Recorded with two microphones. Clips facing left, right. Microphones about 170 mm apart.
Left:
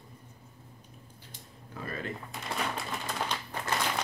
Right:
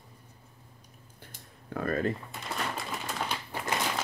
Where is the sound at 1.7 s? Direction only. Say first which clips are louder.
Right 8 dB; 55° right (ahead or behind).